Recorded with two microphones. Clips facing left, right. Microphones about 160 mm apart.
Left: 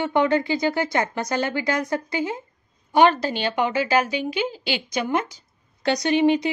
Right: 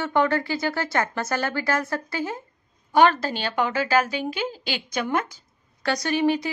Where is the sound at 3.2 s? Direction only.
45° right (ahead or behind).